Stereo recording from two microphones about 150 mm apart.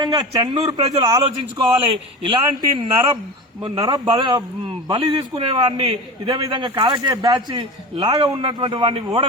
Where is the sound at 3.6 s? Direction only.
25° right (ahead or behind).